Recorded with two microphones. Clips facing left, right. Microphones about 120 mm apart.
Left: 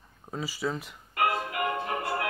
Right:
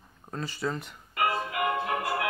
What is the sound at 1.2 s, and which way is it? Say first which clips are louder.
Music: even; 45° left (ahead or behind).